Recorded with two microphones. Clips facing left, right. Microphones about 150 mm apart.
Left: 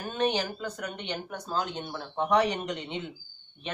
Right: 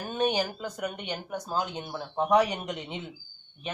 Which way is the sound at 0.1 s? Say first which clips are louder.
Right 1 dB; 10° right (ahead or behind).